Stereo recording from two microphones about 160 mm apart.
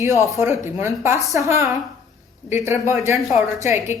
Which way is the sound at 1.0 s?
15° right (ahead or behind).